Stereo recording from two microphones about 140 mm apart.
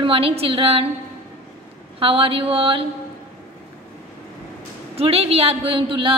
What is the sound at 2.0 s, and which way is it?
Speech, 40° right (ahead or behind).